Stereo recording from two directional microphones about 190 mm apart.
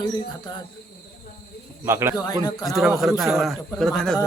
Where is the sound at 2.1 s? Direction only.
20° left (ahead or behind).